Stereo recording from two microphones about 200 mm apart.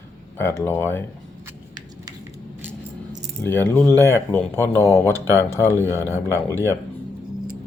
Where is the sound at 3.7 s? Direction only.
10° left (ahead or behind).